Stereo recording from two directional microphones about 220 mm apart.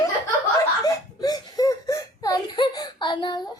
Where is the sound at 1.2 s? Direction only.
15° left (ahead or behind).